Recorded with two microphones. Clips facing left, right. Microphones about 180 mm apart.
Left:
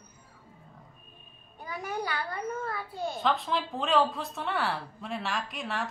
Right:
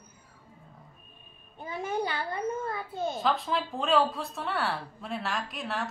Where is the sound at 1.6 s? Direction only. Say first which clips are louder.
Right 3 dB; 25° right (ahead or behind).